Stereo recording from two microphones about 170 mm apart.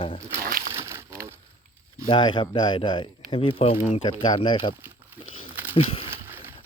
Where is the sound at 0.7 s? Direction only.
15° right (ahead or behind).